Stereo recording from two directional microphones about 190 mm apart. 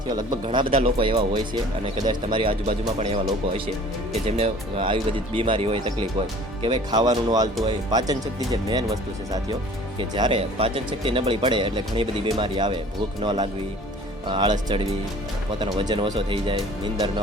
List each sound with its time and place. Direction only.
0.4 s speech: 25° right (ahead or behind)